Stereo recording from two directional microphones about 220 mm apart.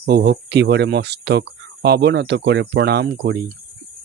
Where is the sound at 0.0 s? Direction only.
45° right (ahead or behind).